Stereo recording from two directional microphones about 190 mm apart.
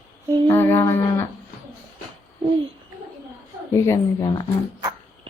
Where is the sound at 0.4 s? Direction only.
10° left (ahead or behind).